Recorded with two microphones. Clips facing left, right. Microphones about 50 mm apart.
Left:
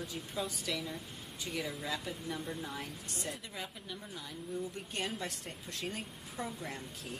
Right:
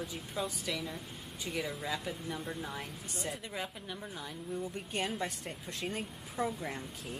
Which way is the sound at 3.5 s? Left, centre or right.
Centre.